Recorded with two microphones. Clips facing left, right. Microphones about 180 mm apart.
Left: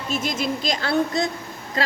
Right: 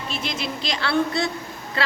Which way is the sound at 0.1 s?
45° left (ahead or behind).